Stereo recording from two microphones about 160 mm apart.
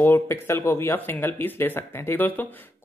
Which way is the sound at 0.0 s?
15° left (ahead or behind).